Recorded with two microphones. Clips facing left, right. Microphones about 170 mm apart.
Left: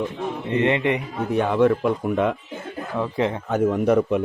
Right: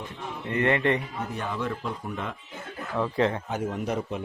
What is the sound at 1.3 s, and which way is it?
Speech, 65° left (ahead or behind).